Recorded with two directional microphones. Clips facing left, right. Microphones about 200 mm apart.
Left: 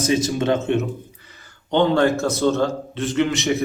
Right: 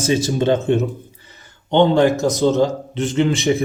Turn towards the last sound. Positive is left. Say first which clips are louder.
# right 3 dB
turn(degrees=-30)  # may be behind; listen again after turning